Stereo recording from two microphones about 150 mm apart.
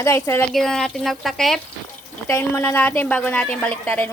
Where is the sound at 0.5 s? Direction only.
5° left (ahead or behind).